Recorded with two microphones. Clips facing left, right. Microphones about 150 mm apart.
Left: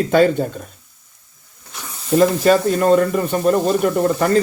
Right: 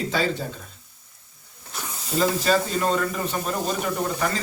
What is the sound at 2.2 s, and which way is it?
Speech, 55° left (ahead or behind).